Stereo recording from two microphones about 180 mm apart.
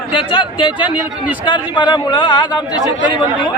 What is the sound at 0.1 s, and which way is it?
Speech, 30° left (ahead or behind).